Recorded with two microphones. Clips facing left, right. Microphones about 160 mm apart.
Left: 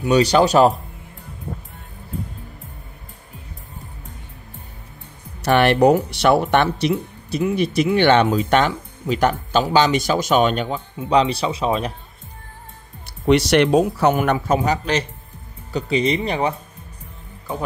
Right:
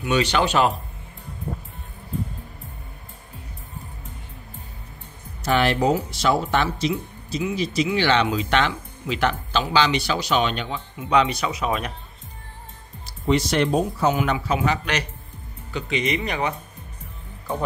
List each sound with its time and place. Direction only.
0.0 s speech: 35° left (ahead or behind)
5.4 s speech: 65° left (ahead or behind); by 10.8 s 45° left (ahead or behind)
11.0 s speech: 30° left (ahead or behind)
13.0 s speech: 75° left (ahead or behind)
14.1 s speech: 55° left (ahead or behind)
14.6 s speech: 35° left (ahead or behind)